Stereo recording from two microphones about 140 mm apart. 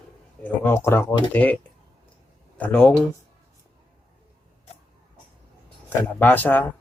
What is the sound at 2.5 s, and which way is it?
Speech, 10° left (ahead or behind).